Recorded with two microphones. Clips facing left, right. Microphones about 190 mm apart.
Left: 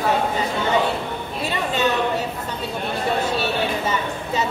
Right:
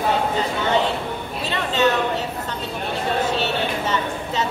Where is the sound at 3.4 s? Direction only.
10° left (ahead or behind).